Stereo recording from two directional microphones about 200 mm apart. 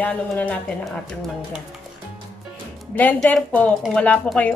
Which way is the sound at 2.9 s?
10° left (ahead or behind).